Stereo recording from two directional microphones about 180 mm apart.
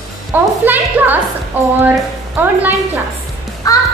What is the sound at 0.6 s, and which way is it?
A woman's voice, 10° right (ahead or behind).